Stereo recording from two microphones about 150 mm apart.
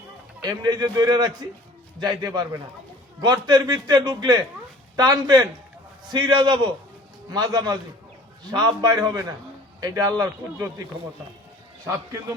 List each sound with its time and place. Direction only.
0.4 s a man's voice: 25° right (ahead or behind)